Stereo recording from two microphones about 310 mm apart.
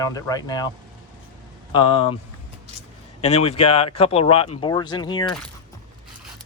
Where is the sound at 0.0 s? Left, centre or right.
Centre.